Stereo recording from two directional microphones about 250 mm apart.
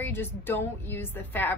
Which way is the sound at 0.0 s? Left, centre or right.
Centre.